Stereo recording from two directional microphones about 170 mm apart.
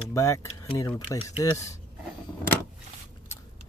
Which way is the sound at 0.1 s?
15° left (ahead or behind).